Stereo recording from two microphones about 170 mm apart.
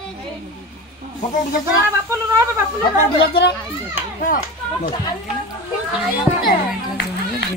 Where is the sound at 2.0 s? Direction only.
15° right (ahead or behind).